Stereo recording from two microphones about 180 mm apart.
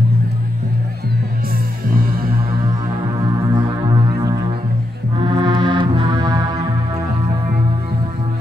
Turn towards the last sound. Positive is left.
turn(degrees=-20)  # may be behind; listen again after turning